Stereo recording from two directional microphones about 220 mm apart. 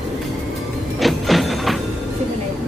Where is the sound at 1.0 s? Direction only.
Centre (ahead or behind).